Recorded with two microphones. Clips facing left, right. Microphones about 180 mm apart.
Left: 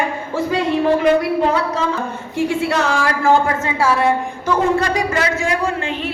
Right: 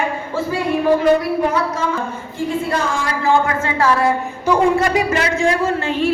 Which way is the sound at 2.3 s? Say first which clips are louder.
Left 2 dB; 75° left (ahead or behind).